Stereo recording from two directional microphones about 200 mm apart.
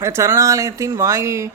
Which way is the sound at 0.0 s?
15° right (ahead or behind).